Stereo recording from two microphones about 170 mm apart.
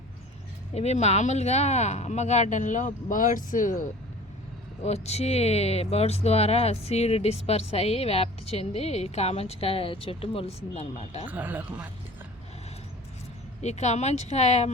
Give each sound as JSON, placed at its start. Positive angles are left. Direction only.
{"t": 0.7, "sound": "speech", "side_deg": 40}
{"t": 4.8, "sound": "speech", "side_deg": 40}
{"t": 11.3, "sound": "speech", "side_deg": -10}
{"t": 13.6, "sound": "speech", "side_deg": 40}